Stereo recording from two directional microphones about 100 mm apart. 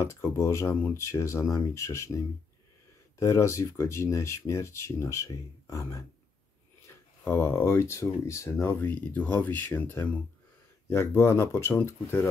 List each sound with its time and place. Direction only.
0.0 s speech: 30° left (ahead or behind)
3.2 s speech: 30° left (ahead or behind)
7.2 s speech: 20° left (ahead or behind)
8.7 s speech: 15° left (ahead or behind)